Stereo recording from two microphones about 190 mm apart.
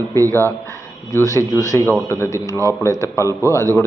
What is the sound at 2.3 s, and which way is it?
Speech, 15° right (ahead or behind).